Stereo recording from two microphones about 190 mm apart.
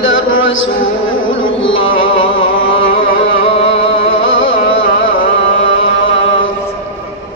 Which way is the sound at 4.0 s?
90° left.